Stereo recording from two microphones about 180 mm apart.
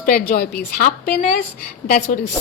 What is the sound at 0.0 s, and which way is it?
A woman's voice, 50° left (ahead or behind).